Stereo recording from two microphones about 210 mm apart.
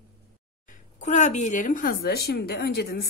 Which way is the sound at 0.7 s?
35° left (ahead or behind).